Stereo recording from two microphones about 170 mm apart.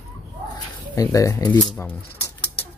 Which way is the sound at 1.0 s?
20° left (ahead or behind).